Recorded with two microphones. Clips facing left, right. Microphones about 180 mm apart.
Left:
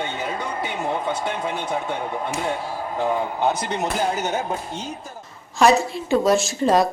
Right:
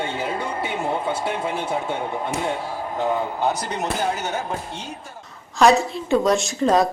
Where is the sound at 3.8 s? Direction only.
20° left (ahead or behind).